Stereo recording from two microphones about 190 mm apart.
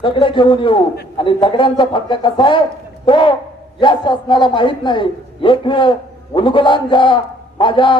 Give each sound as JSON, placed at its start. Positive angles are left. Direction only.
{"t": 0.0, "sound": "a man's voice", "side_deg": 25}